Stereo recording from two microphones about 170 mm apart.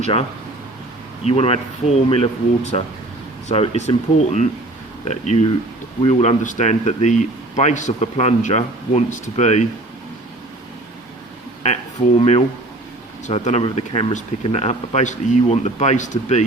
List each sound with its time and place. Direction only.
0.0 s speech: 35° left (ahead or behind)
13.2 s speech: 40° left (ahead or behind)